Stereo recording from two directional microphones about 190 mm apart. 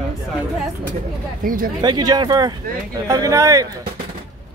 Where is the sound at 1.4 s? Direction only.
45° right (ahead or behind).